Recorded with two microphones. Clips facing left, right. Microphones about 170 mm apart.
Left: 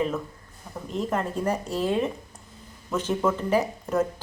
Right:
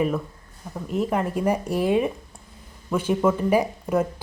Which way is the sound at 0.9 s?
10° right (ahead or behind).